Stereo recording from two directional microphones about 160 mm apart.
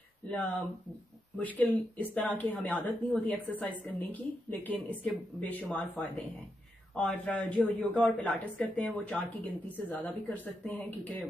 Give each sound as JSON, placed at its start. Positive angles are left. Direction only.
{"t": 0.3, "sound": "a woman's voice", "side_deg": 5}